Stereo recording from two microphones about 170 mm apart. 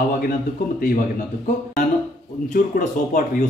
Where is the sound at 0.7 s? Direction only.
55° left (ahead or behind).